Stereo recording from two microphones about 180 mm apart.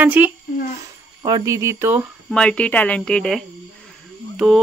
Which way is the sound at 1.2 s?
20° right (ahead or behind).